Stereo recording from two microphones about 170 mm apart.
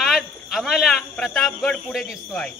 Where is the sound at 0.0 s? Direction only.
Centre (ahead or behind).